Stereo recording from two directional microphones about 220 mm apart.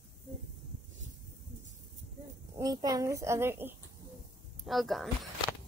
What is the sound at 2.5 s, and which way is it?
A child's voice, 15° right (ahead or behind).